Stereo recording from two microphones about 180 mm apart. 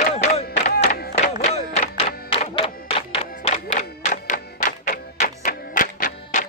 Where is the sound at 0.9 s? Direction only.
60° left (ahead or behind).